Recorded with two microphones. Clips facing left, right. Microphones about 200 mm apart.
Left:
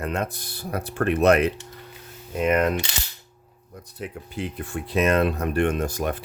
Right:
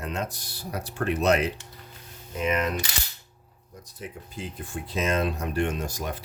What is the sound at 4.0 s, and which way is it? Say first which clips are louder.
Speech: left 6 dB; 65° left (ahead or behind).